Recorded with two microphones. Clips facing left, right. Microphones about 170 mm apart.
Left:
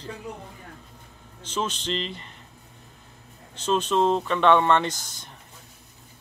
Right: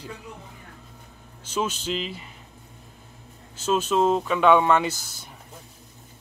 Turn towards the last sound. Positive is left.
turn(degrees=-5)  # may be behind; listen again after turning